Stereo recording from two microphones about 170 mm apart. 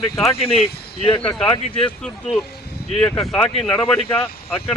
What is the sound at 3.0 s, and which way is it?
Speech, 20° left (ahead or behind).